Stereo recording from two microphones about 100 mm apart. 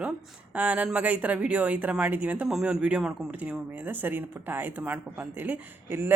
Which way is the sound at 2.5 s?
5° right (ahead or behind).